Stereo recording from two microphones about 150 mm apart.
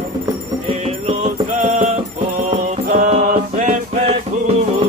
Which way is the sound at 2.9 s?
60° right (ahead or behind).